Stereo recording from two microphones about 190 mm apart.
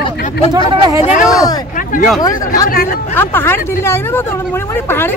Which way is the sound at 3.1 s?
10° left (ahead or behind).